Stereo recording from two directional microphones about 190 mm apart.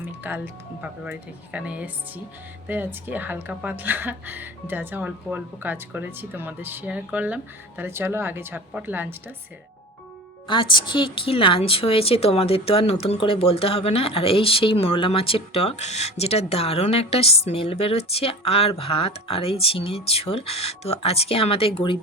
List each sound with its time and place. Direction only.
0.0 s a woman's voice: 10° right (ahead or behind)
10.4 s speech: 25° left (ahead or behind)